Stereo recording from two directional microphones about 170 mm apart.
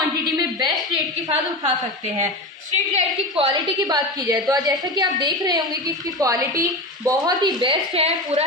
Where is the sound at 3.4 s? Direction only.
25° right (ahead or behind).